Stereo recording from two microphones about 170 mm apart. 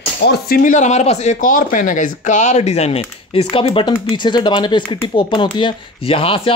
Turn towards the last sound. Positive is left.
turn(degrees=30)  # may be behind; listen again after turning